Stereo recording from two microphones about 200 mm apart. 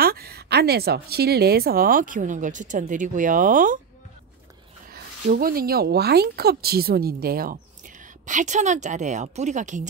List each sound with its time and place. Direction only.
0.0 s speech: 50° right (ahead or behind)
4.8 s speech: 45° right (ahead or behind)